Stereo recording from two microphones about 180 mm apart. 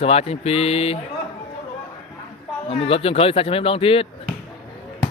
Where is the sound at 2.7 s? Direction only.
35° left (ahead or behind).